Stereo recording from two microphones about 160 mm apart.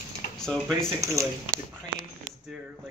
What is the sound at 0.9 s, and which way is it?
Speech, 20° right (ahead or behind).